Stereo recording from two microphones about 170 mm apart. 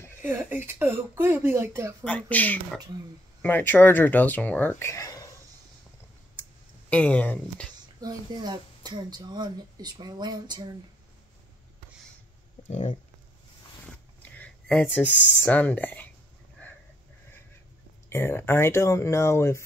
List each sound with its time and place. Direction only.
0.2 s speech: 15° right (ahead or behind)
2.0 s speech: 10° left (ahead or behind)
6.9 s speech: 10° left (ahead or behind)
8.0 s a woman's voice: 25° right (ahead or behind)
12.6 s speech: 45° left (ahead or behind)
14.4 s a sound: 5° left (ahead or behind)
15.1 s speech: 10° left (ahead or behind)
18.1 s speech: 15° left (ahead or behind)